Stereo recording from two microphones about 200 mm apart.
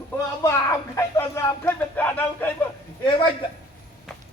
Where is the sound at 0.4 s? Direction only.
15° left (ahead or behind).